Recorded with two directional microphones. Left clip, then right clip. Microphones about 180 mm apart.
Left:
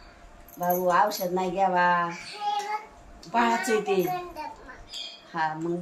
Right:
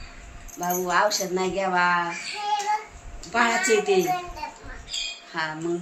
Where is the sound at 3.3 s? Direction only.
45° left (ahead or behind).